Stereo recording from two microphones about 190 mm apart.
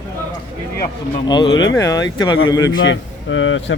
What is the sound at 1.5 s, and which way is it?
Speech, 70° left (ahead or behind).